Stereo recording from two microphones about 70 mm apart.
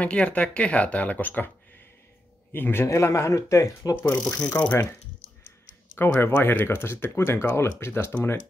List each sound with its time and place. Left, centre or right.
0.0 s speech: centre
2.5 s speech: left
3.9 s speech: left
4.6 s speech: left
5.9 s speech: left